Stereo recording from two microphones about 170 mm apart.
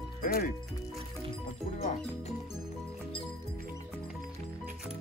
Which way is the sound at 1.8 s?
45° left (ahead or behind).